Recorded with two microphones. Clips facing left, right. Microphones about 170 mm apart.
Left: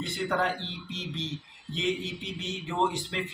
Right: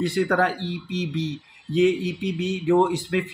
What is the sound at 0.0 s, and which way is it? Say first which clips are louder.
Speech: right 8 dB; 70° right (ahead or behind).